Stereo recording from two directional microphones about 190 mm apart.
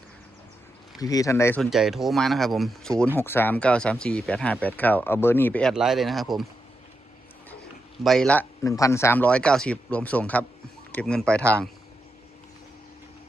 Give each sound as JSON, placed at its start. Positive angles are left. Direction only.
{"t": 0.9, "sound": "speech", "side_deg": 20}
{"t": 1.7, "sound": "speech", "side_deg": 0}
{"t": 8.0, "sound": "speech", "side_deg": 0}